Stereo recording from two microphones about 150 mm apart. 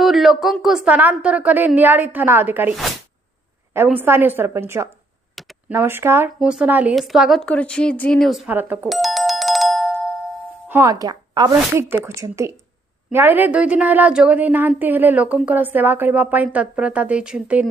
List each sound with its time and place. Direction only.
0.0 s a woman's voice: centre (ahead or behind)
3.7 s a woman's voice: 15° right (ahead or behind)
8.8 s doorbell: centre (ahead or behind)
10.7 s a woman's voice: 20° right (ahead or behind)